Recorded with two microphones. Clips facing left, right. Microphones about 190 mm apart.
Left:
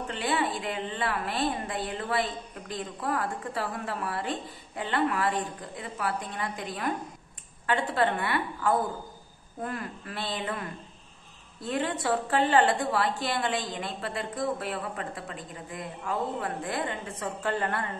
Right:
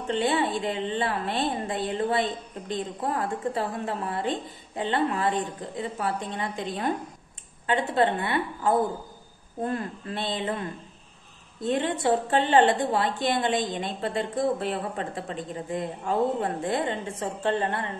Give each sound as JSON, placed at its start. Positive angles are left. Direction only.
{"t": 0.1, "sound": "a woman's voice", "side_deg": -25}